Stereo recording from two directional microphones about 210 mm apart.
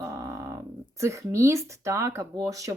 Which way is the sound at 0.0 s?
15° right (ahead or behind).